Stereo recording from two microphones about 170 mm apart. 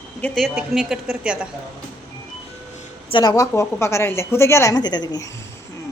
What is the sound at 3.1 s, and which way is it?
A woman's voice, 25° left (ahead or behind).